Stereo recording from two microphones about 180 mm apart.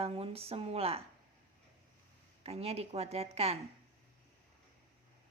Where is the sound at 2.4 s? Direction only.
35° right (ahead or behind).